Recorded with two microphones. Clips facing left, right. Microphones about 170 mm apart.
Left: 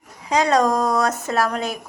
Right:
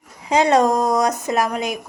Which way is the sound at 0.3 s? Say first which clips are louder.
Right 2 dB; 25° right (ahead or behind).